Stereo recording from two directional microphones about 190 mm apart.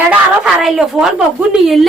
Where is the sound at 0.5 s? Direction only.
Centre (ahead or behind).